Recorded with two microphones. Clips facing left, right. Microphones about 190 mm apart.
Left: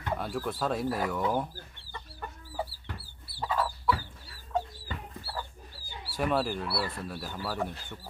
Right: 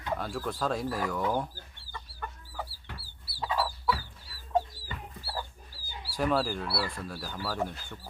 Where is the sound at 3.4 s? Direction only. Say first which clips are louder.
Even; 5° right (ahead or behind).